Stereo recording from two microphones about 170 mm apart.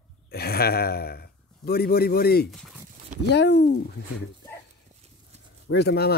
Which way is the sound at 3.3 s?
85° left.